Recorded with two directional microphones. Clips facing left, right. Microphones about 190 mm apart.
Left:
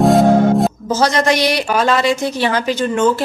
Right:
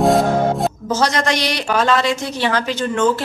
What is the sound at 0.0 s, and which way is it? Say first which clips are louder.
Music: left 4 dB; centre (ahead or behind).